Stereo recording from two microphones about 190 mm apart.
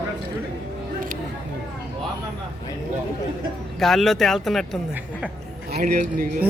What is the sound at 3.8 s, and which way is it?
Speech, centre (ahead or behind).